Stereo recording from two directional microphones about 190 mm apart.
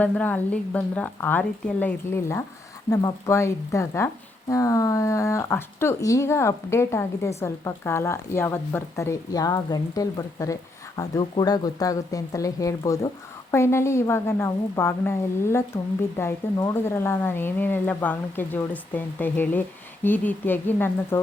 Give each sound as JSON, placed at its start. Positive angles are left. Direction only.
{"t": 0.0, "sound": "a woman's voice", "side_deg": 10}